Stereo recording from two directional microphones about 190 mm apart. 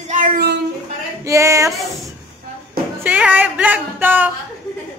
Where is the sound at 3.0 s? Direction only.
10° right (ahead or behind).